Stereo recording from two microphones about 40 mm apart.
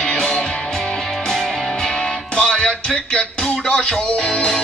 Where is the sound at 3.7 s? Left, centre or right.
Centre.